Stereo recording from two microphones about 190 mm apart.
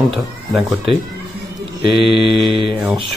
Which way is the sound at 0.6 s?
Centre (ahead or behind).